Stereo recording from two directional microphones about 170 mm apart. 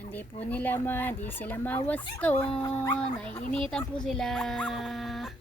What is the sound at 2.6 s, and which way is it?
Dog, 25° left (ahead or behind).